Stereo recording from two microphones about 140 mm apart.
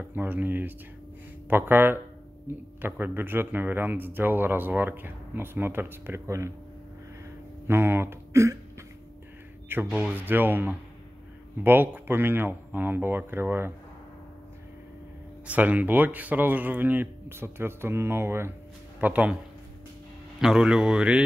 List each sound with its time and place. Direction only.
0.0 s speech: 15° right (ahead or behind)
7.6 s speech: 15° right (ahead or behind)
9.9 s speech: 15° right (ahead or behind)
15.4 s speech: 10° right (ahead or behind)
20.3 s a man's voice: 5° right (ahead or behind)